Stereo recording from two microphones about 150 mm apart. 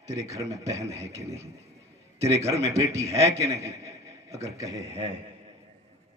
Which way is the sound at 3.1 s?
40° right (ahead or behind).